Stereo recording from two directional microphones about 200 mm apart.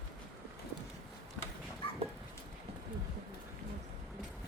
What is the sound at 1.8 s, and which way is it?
Dog, 25° left (ahead or behind).